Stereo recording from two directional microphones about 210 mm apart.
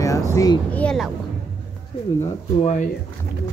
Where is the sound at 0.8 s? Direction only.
Centre (ahead or behind).